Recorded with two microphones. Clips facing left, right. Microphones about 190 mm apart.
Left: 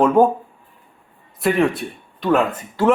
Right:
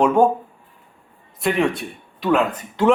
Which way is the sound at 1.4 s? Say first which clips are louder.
Left 2 dB; centre (ahead or behind).